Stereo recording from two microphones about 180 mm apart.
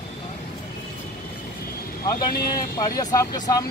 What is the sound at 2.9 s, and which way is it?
Speech, 20° left (ahead or behind).